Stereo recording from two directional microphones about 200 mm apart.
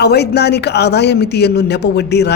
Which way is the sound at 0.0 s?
55° left (ahead or behind).